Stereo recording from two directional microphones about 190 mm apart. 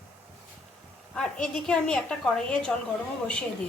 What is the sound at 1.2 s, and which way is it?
A woman's voice, 5° left (ahead or behind).